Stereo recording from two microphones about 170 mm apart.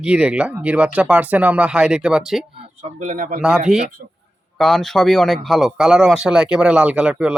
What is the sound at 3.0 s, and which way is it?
Speech, 50° right (ahead or behind).